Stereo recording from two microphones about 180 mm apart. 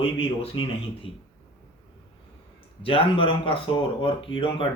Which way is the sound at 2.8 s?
30° left (ahead or behind).